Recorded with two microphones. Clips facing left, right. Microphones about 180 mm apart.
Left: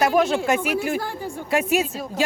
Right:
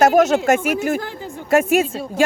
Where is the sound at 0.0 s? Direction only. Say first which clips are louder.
Right 5 dB; 45° right (ahead or behind).